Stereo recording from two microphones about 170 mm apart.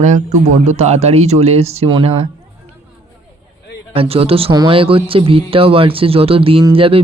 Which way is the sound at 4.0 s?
35° right (ahead or behind).